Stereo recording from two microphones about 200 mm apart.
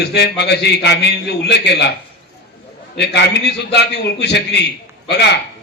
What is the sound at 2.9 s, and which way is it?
A man's voice, 60° left (ahead or behind).